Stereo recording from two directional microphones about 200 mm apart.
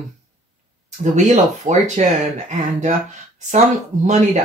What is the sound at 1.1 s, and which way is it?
Speech, 35° right (ahead or behind).